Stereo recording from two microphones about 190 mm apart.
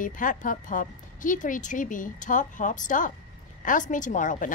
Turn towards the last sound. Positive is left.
turn(degrees=45)  # may be behind; listen again after turning